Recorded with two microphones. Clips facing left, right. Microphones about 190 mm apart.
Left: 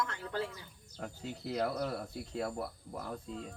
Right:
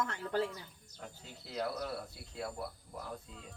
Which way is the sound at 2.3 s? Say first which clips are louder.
Left 4 dB; 45° left (ahead or behind).